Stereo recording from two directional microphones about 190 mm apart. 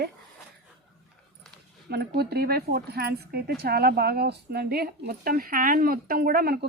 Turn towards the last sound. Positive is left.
turn(degrees=-50)  # may be behind; listen again after turning